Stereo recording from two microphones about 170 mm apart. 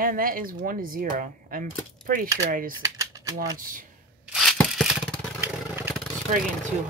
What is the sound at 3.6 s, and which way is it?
Speech, 50° right (ahead or behind).